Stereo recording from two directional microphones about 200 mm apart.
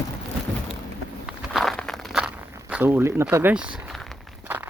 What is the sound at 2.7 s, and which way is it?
Speech, 10° right (ahead or behind).